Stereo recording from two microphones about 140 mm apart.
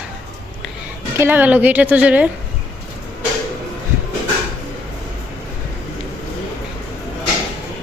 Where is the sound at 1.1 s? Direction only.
15° right (ahead or behind).